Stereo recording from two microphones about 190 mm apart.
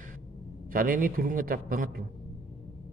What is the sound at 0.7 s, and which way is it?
Speech, 50° right (ahead or behind).